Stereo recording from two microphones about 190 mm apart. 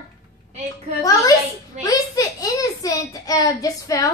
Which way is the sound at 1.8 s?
20° left (ahead or behind).